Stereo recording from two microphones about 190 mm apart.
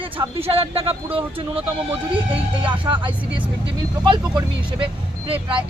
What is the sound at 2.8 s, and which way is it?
A man's voice, 25° right (ahead or behind).